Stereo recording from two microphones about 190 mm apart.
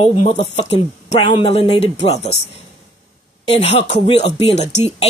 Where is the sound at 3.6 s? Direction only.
30° left (ahead or behind).